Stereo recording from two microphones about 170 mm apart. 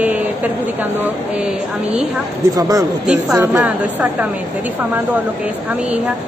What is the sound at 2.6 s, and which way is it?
Speech, 20° right (ahead or behind).